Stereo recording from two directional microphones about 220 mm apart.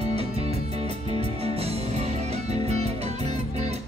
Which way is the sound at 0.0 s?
30° right (ahead or behind).